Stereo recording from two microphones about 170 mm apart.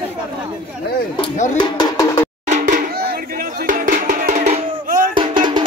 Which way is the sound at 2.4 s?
45° right (ahead or behind).